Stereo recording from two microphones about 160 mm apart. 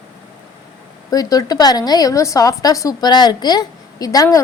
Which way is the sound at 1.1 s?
25° left (ahead or behind).